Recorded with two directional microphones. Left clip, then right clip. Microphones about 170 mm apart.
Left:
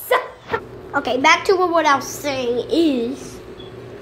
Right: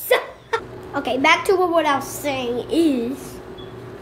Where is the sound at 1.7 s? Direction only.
5° right (ahead or behind).